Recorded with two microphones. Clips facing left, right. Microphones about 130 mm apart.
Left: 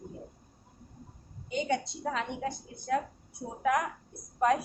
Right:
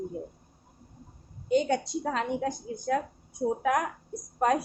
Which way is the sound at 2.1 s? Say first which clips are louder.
Right 3 dB; 40° right (ahead or behind).